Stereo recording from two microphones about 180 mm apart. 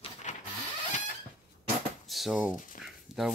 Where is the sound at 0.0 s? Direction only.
40° left (ahead or behind).